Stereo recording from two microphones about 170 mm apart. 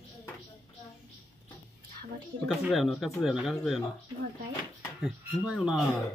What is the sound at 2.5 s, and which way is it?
Speech, centre (ahead or behind).